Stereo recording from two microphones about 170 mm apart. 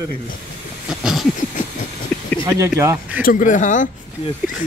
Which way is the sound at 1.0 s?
5° right (ahead or behind).